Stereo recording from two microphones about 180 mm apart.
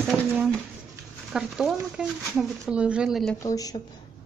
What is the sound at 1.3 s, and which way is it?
Speech, 5° right (ahead or behind).